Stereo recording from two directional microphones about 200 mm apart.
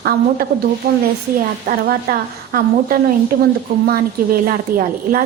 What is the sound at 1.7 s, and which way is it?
Speech, 50° right (ahead or behind).